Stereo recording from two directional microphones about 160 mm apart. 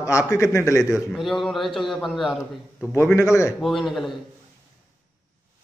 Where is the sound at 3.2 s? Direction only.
20° left (ahead or behind).